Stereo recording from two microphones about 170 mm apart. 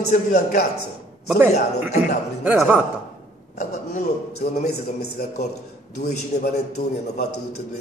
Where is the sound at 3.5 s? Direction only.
45° left (ahead or behind).